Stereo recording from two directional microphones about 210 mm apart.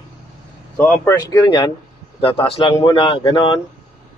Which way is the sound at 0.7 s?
5° left (ahead or behind).